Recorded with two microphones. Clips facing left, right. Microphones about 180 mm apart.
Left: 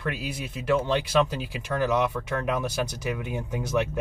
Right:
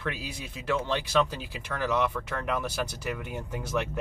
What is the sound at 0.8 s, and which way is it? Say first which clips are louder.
Speech: left 3 dB; 15° left (ahead or behind).